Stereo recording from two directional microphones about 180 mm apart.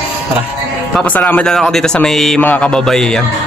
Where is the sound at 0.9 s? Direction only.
10° left (ahead or behind).